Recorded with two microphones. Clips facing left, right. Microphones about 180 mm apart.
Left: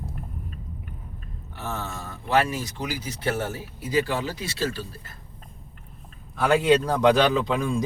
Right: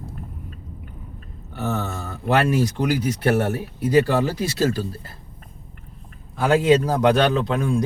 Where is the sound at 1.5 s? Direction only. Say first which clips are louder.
Right 7 dB; 70° right (ahead or behind).